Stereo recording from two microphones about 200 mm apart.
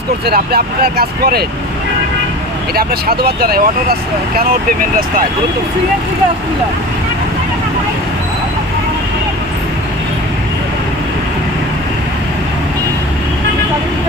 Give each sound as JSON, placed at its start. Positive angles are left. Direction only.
{"t": 0.3, "sound": "speech", "side_deg": -50}
{"t": 2.7, "sound": "speech", "side_deg": -50}